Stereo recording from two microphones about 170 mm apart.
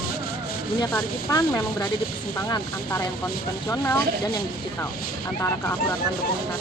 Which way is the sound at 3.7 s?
15° left (ahead or behind).